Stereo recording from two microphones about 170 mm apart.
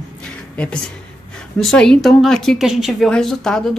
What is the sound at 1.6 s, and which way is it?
Speech, 5° left (ahead or behind).